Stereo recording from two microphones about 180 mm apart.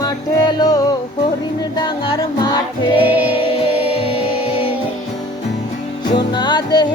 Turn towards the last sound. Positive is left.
turn(degrees=25)  # may be behind; listen again after turning